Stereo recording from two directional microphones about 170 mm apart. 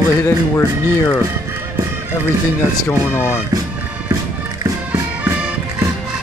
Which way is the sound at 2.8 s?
15° left (ahead or behind).